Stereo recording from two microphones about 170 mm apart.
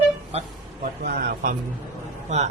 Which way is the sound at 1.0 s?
70° right (ahead or behind).